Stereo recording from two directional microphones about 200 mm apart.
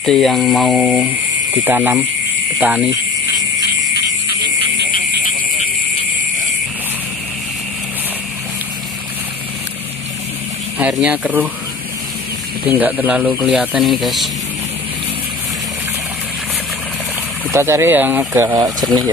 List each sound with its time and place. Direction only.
0.0 s speech: centre (ahead or behind)
3.9 s a sound: 55° left (ahead or behind)
10.8 s speech: 5° right (ahead or behind)
12.6 s speech: 10° right (ahead or behind)
17.5 s speech: 15° right (ahead or behind)